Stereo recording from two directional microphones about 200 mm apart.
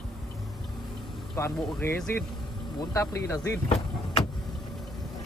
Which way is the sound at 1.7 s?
5° left (ahead or behind).